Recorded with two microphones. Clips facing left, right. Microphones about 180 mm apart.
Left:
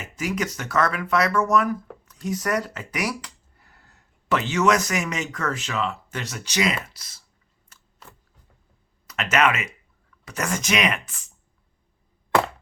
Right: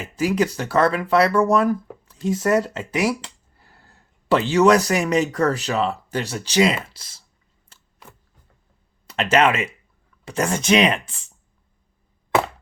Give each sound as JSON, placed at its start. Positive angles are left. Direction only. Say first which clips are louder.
{"t": 0.0, "sound": "speech", "louder": "right 7 dB", "side_deg": -30}
{"t": 7.7, "sound": "a sound", "louder": "right 1 dB", "side_deg": -30}
{"t": 9.0, "sound": "speech", "louder": "right 4 dB", "side_deg": -30}